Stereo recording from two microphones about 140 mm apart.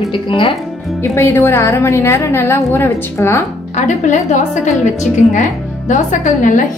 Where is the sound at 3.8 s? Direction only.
60° left (ahead or behind).